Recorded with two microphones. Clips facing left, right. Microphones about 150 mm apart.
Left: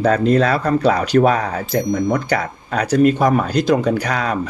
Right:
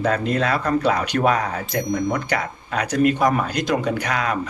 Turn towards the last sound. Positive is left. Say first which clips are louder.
# left 3 dB
turn(degrees=35)  # may be behind; listen again after turning